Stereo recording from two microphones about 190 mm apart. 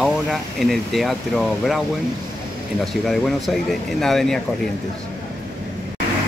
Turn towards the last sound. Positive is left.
turn(degrees=0)  # may be behind; listen again after turning